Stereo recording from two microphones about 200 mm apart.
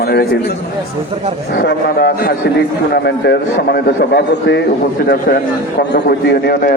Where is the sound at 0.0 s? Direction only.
50° left (ahead or behind).